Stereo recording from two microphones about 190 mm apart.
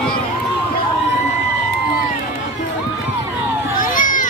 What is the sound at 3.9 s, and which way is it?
Run, 45° left (ahead or behind).